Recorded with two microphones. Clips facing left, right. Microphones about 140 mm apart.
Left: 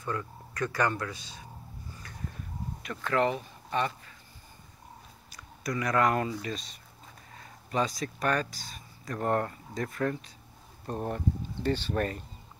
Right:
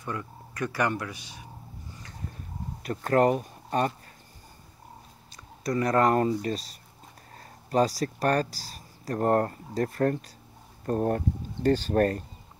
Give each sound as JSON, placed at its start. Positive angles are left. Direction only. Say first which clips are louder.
{"t": 0.0, "sound": "speech", "louder": "even", "side_deg": -15}
{"t": 2.8, "sound": "speech", "louder": "right 5 dB", "side_deg": -40}
{"t": 5.3, "sound": "speech", "louder": "right 5 dB", "side_deg": -30}
{"t": 7.3, "sound": "speech", "louder": "right 6 dB", "side_deg": -40}
{"t": 10.9, "sound": "speech", "louder": "right 6 dB", "side_deg": -55}